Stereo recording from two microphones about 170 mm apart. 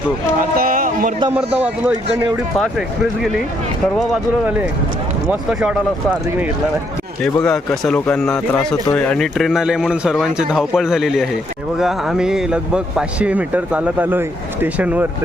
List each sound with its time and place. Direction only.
0.5 s a sound: 55° right (ahead or behind)
1.6 s a man's voice: 10° right (ahead or behind)
7.4 s a man's voice: 5° left (ahead or behind)